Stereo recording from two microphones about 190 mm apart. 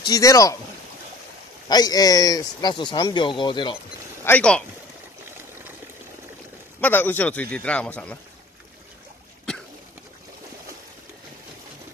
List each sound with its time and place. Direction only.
0.1 s a man's voice: 15° left (ahead or behind)
1.7 s speech: 20° left (ahead or behind)
4.2 s speech: 10° left (ahead or behind)
6.8 s a man's voice: 10° left (ahead or behind)